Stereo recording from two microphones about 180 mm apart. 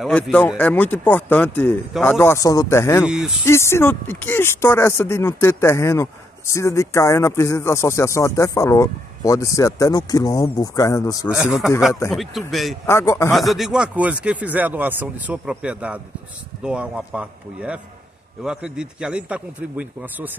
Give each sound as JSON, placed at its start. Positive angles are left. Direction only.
{"t": 0.0, "sound": "speech", "side_deg": 5}
{"t": 3.1, "sound": "a man's voice", "side_deg": -5}
{"t": 3.4, "sound": "speech", "side_deg": 15}
{"t": 11.2, "sound": "a man's voice", "side_deg": -5}
{"t": 12.8, "sound": "speech", "side_deg": 15}
{"t": 13.4, "sound": "speech", "side_deg": 0}